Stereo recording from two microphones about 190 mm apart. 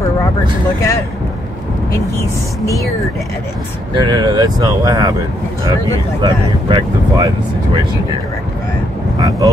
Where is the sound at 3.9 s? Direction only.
20° right (ahead or behind).